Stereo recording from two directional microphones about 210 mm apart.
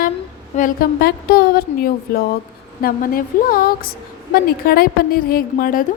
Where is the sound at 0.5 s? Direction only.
40° left (ahead or behind).